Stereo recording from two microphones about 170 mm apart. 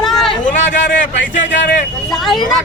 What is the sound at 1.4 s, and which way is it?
Speech, 90° left.